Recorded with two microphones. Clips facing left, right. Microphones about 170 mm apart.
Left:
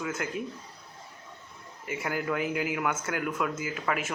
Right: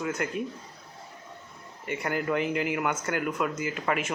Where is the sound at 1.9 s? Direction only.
5° left (ahead or behind).